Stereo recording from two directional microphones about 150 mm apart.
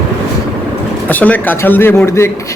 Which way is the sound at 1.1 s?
10° left (ahead or behind).